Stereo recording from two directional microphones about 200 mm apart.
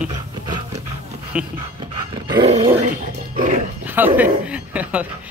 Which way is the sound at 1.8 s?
25° right (ahead or behind).